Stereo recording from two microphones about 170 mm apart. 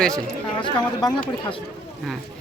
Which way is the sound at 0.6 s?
30° left (ahead or behind).